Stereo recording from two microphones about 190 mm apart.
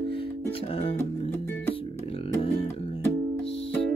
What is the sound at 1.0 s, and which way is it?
Music, 10° left (ahead or behind).